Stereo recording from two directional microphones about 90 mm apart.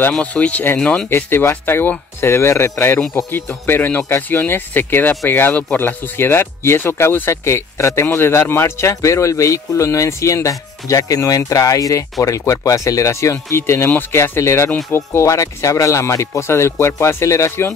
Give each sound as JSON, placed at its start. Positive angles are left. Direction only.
{"t": 0.2, "sound": "speech", "side_deg": 15}
{"t": 1.1, "sound": "speech", "side_deg": 25}